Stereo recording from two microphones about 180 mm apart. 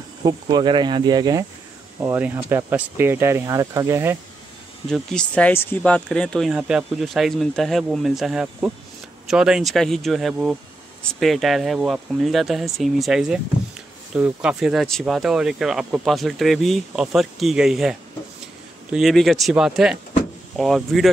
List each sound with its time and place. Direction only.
0.2 s speech: 20° right (ahead or behind)
4.8 s speech: 5° left (ahead or behind)